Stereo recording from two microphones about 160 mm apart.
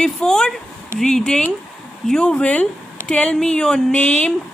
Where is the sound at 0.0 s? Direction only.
5° left (ahead or behind).